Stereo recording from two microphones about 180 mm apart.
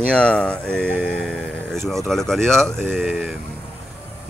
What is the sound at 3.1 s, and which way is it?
Speech, 10° right (ahead or behind).